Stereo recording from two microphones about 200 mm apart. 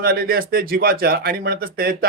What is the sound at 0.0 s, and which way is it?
Speech, 50° right (ahead or behind).